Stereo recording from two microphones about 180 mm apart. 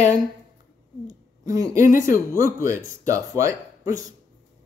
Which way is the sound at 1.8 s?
50° left (ahead or behind).